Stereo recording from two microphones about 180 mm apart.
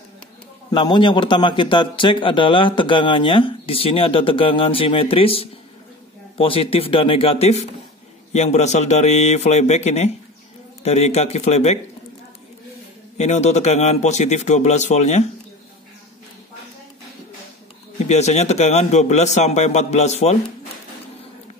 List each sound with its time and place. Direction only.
0.7 s a man's voice: 25° left (ahead or behind)
13.2 s a man's voice: 40° left (ahead or behind)
17.9 s a man's voice: 40° left (ahead or behind)